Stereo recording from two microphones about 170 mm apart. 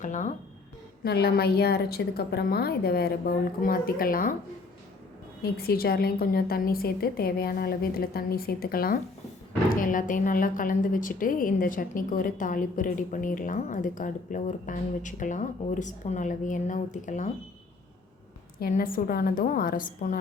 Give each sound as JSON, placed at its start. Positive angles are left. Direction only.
{"t": 0.0, "sound": "a woman's voice", "side_deg": 45}
{"t": 1.0, "sound": "a woman's voice", "side_deg": 70}
{"t": 5.4, "sound": "a woman's voice", "side_deg": 65}
{"t": 18.6, "sound": "a woman's voice", "side_deg": 55}